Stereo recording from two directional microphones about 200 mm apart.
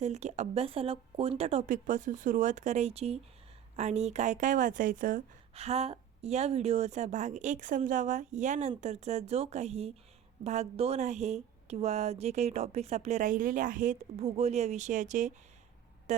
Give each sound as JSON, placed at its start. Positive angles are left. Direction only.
{"t": 0.0, "sound": "a woman's voice", "side_deg": -35}